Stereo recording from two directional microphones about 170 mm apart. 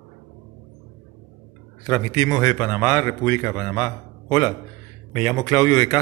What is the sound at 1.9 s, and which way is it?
A man's voice, 15° left (ahead or behind).